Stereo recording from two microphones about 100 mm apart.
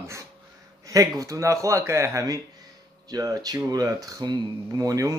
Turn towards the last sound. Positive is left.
turn(degrees=-35)  # may be behind; listen again after turning